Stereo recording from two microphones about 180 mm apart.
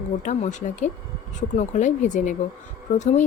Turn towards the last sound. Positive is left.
turn(degrees=40)  # may be behind; listen again after turning